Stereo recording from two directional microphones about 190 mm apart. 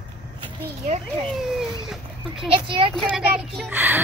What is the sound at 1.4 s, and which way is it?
Speech, centre (ahead or behind).